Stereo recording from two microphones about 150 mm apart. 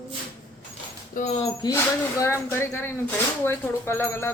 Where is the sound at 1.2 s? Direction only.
65° left (ahead or behind).